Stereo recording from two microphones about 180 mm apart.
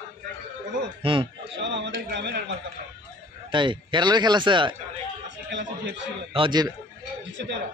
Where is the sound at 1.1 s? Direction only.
30° right (ahead or behind).